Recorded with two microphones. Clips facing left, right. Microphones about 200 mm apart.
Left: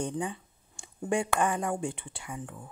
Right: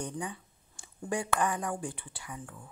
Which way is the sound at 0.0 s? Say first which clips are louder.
Left 5 dB; 25° left (ahead or behind).